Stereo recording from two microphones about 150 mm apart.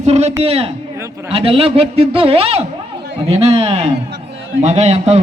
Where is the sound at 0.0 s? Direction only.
45° right (ahead or behind).